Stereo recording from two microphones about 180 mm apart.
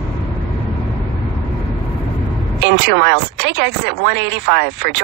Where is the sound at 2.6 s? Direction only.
70° right (ahead or behind).